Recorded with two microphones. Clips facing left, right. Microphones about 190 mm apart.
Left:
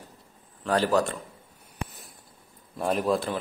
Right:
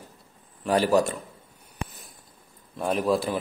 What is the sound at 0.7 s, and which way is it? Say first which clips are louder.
Speech: right 2 dB; 10° right (ahead or behind).